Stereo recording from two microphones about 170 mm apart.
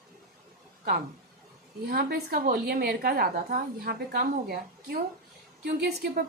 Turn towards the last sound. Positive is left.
turn(degrees=-60)  # may be behind; listen again after turning